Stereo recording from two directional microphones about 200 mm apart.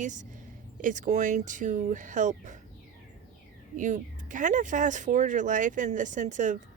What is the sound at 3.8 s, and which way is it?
Speech, 40° right (ahead or behind).